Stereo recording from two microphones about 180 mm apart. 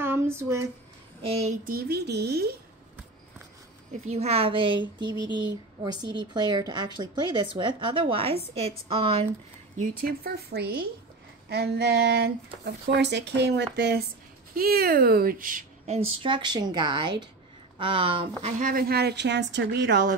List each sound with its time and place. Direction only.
0.0 s a sound: 15° right (ahead or behind)
1.2 s speech: 35° right (ahead or behind); by 2.5 s 65° right (ahead or behind)
4.1 s a woman's voice: 35° right (ahead or behind)
9.8 s speech: 55° right (ahead or behind)
14.5 s speech: 55° right (ahead or behind)
16.2 s a woman's voice: 25° right (ahead or behind)
18.4 s speech: 50° right (ahead or behind); by 20.1 s 70° right (ahead or behind)